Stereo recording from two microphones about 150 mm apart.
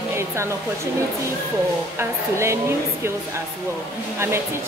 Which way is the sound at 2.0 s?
20° right (ahead or behind).